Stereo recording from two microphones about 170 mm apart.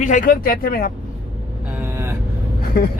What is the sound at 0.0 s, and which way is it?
Speech, 50° left (ahead or behind).